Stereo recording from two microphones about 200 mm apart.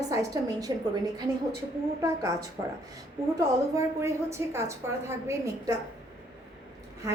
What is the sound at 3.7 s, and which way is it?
A woman's voice, 15° right (ahead or behind).